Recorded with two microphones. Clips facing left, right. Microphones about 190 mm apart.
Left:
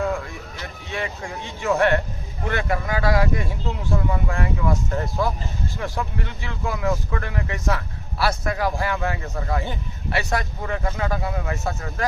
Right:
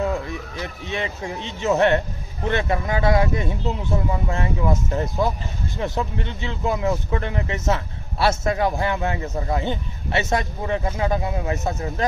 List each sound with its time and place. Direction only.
0.6 s speech: 20° right (ahead or behind)